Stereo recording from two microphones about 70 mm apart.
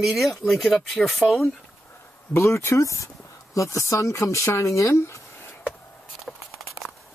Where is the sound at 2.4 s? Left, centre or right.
Left.